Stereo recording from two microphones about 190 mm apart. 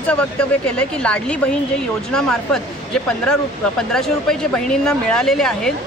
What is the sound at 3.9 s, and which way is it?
Speech, 5° left (ahead or behind).